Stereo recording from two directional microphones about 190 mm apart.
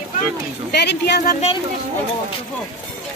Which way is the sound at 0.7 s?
60° left (ahead or behind).